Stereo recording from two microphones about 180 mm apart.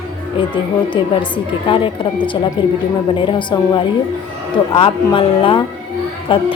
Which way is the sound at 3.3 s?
25° left (ahead or behind).